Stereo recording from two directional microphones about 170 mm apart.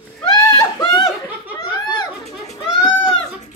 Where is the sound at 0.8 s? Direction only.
25° left (ahead or behind).